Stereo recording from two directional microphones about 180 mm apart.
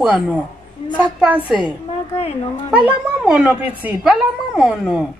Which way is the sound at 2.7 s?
5° right (ahead or behind).